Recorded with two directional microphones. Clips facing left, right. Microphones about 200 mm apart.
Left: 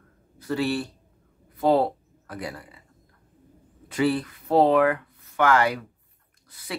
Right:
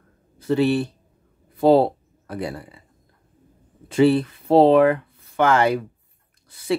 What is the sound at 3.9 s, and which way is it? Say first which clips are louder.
Speech: right 7 dB; 25° right (ahead or behind).